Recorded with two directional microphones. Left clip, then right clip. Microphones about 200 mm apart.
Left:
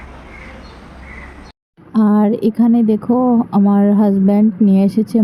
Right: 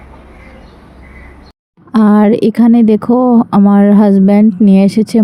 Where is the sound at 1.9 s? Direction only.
30° right (ahead or behind).